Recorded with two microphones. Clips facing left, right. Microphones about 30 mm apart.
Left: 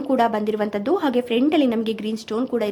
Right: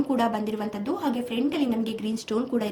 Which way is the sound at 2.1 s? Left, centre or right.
Centre.